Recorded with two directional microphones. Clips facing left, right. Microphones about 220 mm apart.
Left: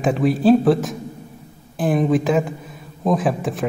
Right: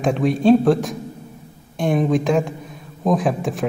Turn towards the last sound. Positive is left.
turn(degrees=0)  # may be behind; listen again after turning